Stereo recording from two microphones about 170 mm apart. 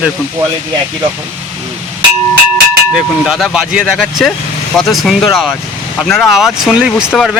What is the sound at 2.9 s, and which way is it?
Speech, centre (ahead or behind).